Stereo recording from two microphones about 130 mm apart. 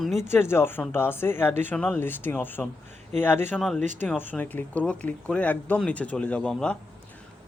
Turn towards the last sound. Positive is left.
turn(degrees=5)  # may be behind; listen again after turning